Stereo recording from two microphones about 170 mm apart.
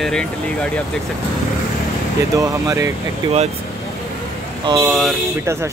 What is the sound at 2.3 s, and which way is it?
Speech, 20° right (ahead or behind).